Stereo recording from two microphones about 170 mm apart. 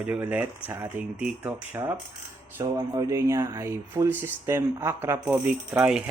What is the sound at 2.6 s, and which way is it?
Speech, 20° right (ahead or behind).